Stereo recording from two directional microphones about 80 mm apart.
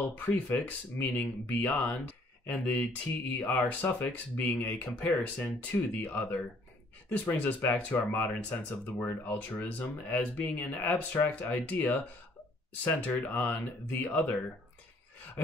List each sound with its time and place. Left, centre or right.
0.0 s speech: left